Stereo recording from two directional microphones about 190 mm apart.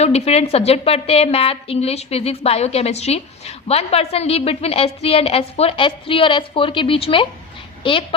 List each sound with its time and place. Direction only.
0.0 s a woman's voice: 35° left (ahead or behind)